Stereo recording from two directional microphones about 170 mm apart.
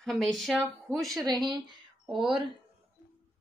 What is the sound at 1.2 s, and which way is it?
Speech, 25° right (ahead or behind).